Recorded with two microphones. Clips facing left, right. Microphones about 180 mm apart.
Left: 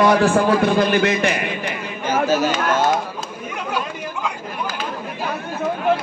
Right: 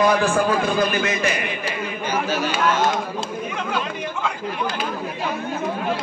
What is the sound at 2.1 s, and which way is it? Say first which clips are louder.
Chatter: left 6 dB; 45° left (ahead or behind).